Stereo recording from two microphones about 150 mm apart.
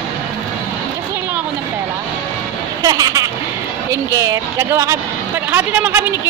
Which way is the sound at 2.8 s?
25° right (ahead or behind).